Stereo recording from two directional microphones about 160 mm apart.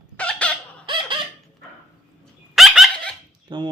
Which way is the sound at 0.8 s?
30° right (ahead or behind).